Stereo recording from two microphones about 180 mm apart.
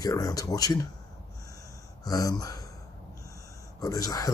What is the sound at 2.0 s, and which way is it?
Speech, 20° left (ahead or behind).